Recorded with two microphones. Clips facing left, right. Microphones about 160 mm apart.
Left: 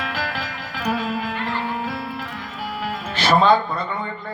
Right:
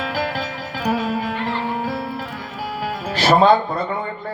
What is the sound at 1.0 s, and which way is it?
Music, 40° right (ahead or behind).